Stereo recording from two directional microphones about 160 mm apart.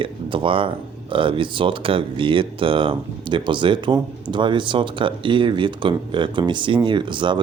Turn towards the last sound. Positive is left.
turn(degrees=-30)  # may be behind; listen again after turning